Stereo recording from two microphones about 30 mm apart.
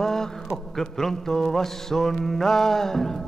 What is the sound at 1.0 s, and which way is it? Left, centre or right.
Mantra, centre.